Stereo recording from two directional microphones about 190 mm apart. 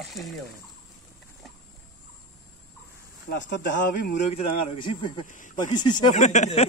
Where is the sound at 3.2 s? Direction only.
65° left (ahead or behind).